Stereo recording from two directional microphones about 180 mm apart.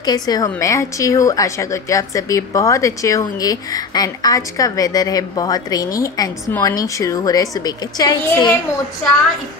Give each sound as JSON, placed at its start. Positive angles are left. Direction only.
{"t": 0.0, "sound": "a woman's voice", "side_deg": 20}